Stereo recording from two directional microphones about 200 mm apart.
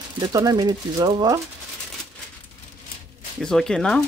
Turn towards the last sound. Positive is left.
turn(degrees=5)  # may be behind; listen again after turning